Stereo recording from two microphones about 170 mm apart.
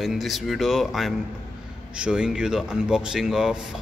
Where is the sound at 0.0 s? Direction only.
Centre (ahead or behind).